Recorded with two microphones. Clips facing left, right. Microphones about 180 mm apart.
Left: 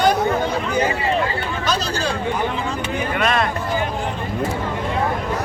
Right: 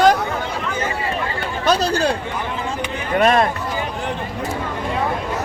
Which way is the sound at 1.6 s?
60° right (ahead or behind).